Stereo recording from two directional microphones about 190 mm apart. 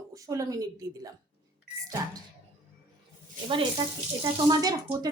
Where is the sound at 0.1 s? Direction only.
15° right (ahead or behind).